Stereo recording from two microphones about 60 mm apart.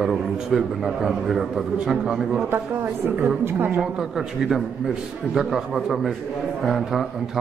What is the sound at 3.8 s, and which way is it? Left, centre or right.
A man's voice, centre.